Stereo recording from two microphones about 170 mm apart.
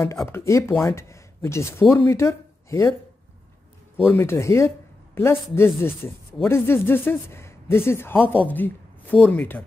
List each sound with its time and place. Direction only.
0.3 s speech: 15° left (ahead or behind)
3.9 s speech: 10° left (ahead or behind)